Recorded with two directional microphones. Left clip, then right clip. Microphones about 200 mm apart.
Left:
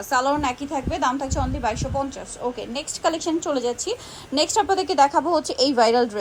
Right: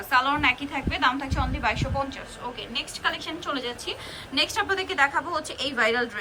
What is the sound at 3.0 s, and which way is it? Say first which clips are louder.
A woman's voice: left 8 dB; 30° left (ahead or behind).